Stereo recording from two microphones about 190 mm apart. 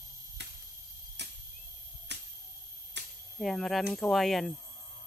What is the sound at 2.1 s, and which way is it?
Finger snapping, 65° right (ahead or behind).